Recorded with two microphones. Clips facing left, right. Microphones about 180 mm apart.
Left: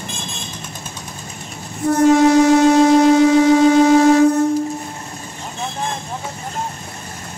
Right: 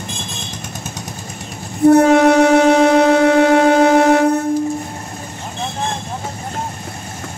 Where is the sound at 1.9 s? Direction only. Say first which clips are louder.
Left 3 dB; 65° right (ahead or behind).